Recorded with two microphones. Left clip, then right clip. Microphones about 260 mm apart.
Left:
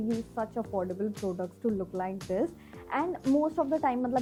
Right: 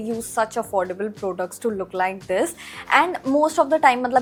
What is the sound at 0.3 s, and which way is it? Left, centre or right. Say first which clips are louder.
A woman's voice: right 14 dB; centre.